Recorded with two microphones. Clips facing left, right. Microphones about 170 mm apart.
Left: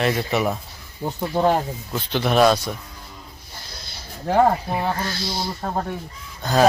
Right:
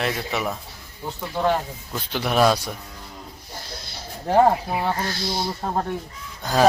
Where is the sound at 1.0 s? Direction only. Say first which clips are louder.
Left 5 dB; 40° left (ahead or behind).